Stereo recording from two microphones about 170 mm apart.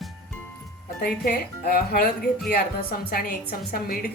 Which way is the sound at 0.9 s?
60° left (ahead or behind).